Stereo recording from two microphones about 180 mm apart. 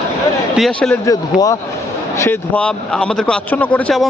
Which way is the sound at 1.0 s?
20° left (ahead or behind).